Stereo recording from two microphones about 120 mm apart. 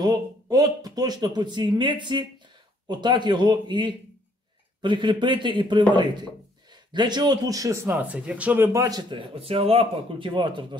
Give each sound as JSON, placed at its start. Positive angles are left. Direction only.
{"t": 0.0, "sound": "a man's voice", "side_deg": -35}
{"t": 8.0, "sound": "speech", "side_deg": -10}
{"t": 8.7, "sound": "a man's voice", "side_deg": -30}
{"t": 9.1, "sound": "speech", "side_deg": -50}